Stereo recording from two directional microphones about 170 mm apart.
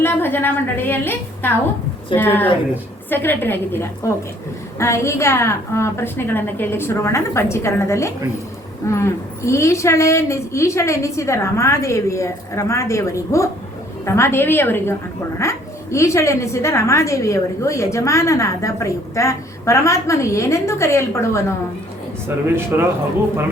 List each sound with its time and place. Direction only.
0.0 s a woman's voice: 10° left (ahead or behind)
22.5 s a man's voice: 15° right (ahead or behind)